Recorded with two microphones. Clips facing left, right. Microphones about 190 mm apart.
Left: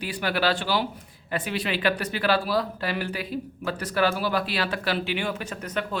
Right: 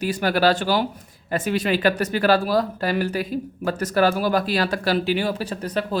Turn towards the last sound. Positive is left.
turn(degrees=-35)  # may be behind; listen again after turning